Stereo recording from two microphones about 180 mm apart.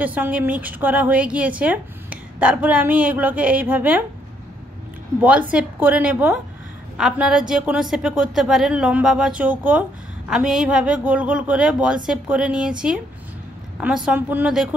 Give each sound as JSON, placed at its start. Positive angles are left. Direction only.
{"t": 0.0, "sound": "a woman's voice", "side_deg": -10}
{"t": 5.2, "sound": "a woman's voice", "side_deg": -10}